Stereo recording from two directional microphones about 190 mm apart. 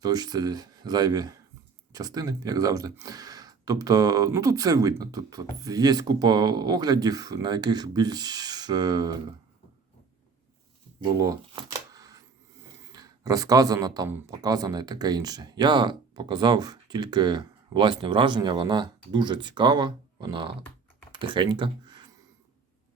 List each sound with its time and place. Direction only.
0.0 s speech: 20° right (ahead or behind)
11.0 s camera: 20° right (ahead or behind)
12.9 s speech: 20° right (ahead or behind)